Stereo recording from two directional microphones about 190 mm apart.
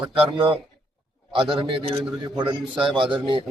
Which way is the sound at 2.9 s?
25° right (ahead or behind).